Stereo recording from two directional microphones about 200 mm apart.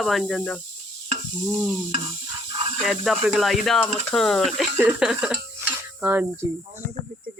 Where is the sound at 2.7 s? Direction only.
Centre (ahead or behind).